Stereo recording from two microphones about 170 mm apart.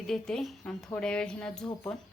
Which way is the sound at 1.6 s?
25° left (ahead or behind).